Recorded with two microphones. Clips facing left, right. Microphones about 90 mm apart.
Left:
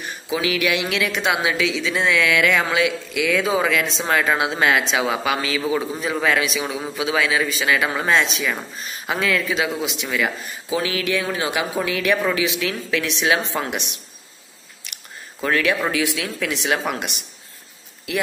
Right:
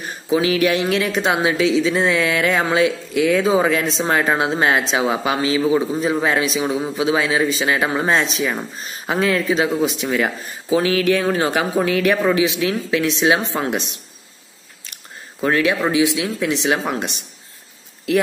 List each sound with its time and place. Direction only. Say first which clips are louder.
0.0 s a woman's voice: right 5 dB; 35° right (ahead or behind)
15.4 s a woman's voice: right 3 dB; 30° right (ahead or behind)